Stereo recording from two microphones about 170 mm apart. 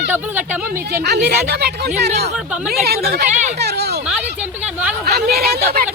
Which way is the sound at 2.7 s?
65° right (ahead or behind).